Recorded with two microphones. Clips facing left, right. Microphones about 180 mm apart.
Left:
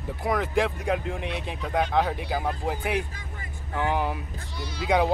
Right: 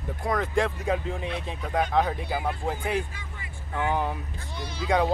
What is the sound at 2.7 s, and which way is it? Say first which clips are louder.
Speech: even; 10° left (ahead or behind).